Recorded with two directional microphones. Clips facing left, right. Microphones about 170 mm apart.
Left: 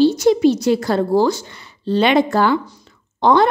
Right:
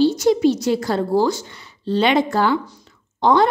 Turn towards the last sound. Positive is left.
turn(degrees=65)  # may be behind; listen again after turning